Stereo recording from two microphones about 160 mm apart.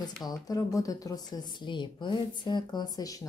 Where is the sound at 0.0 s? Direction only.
25° left (ahead or behind).